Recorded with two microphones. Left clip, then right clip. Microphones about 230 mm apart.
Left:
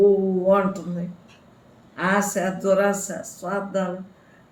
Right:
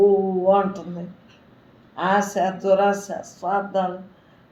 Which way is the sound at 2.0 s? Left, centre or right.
Left.